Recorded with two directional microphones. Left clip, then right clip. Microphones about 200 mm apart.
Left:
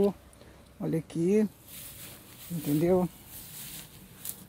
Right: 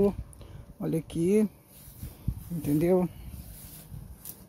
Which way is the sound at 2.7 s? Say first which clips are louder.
Right 1 dB; 20° right (ahead or behind).